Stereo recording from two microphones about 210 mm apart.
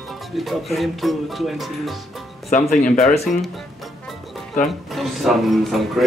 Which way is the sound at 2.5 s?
40° left (ahead or behind).